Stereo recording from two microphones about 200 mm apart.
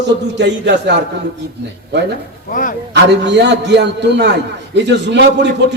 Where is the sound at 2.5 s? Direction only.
40° left (ahead or behind).